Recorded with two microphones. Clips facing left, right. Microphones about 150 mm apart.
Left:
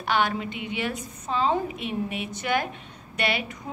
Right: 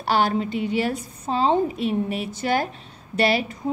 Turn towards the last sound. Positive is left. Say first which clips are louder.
# right 7 dB
turn(degrees=-35)  # may be behind; listen again after turning